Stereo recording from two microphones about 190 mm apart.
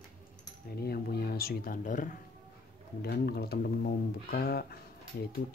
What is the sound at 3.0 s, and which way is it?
Speech, 55° left (ahead or behind).